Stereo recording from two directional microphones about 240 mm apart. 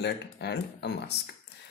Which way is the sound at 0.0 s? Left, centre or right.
Left.